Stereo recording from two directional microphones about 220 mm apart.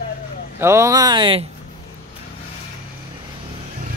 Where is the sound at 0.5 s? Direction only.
10° right (ahead or behind).